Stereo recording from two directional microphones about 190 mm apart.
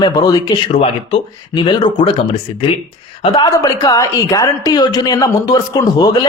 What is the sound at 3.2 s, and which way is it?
A woman's voice, 25° left (ahead or behind).